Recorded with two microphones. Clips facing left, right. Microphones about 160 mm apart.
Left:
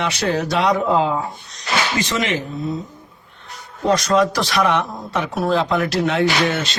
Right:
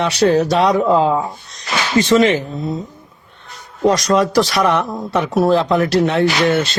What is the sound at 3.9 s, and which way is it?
Speech, 40° right (ahead or behind).